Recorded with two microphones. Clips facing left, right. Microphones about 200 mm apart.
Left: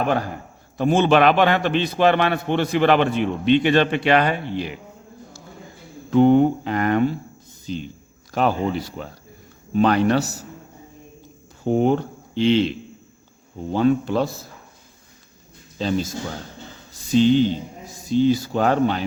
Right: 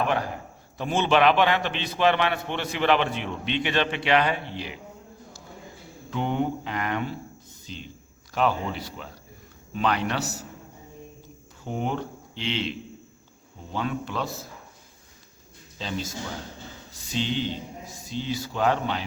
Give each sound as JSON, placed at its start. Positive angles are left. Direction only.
{"t": 0.8, "sound": "a man's voice", "side_deg": 45}
{"t": 6.1, "sound": "a man's voice", "side_deg": 45}
{"t": 11.6, "sound": "a man's voice", "side_deg": 40}
{"t": 15.8, "sound": "a man's voice", "side_deg": 45}